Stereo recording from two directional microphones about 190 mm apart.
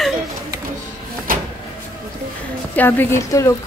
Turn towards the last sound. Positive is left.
turn(degrees=15)  # may be behind; listen again after turning